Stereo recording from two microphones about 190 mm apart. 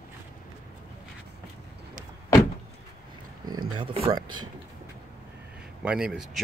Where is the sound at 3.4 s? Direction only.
25° right (ahead or behind).